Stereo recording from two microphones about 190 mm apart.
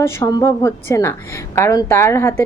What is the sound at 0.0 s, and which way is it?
A woman's voice, 15° left (ahead or behind).